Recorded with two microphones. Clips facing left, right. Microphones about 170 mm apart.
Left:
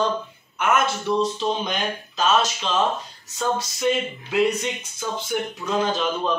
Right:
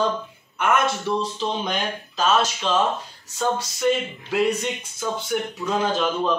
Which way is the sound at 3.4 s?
Centre (ahead or behind).